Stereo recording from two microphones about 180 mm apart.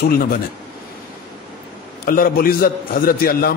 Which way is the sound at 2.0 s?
55° left (ahead or behind).